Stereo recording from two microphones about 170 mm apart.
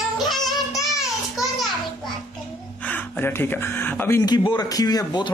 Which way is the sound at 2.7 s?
10° left (ahead or behind).